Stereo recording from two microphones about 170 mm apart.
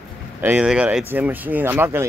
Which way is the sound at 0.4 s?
10° right (ahead or behind).